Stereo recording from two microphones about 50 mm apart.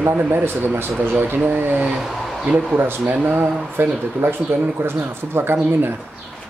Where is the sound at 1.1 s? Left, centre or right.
Right.